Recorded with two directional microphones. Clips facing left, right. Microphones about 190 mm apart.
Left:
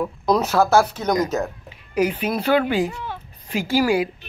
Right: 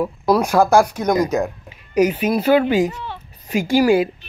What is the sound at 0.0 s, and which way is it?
Speech, 10° right (ahead or behind).